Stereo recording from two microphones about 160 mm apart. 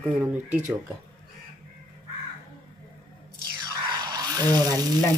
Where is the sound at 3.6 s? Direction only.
25° right (ahead or behind).